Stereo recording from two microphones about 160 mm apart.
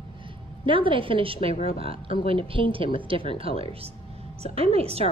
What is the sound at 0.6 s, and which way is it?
A woman's voice, 35° right (ahead or behind).